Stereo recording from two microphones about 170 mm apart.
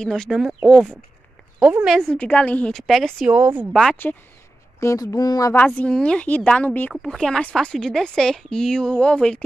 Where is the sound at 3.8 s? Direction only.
10° left (ahead or behind).